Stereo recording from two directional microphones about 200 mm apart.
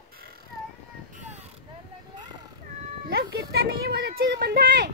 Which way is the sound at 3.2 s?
55° right (ahead or behind).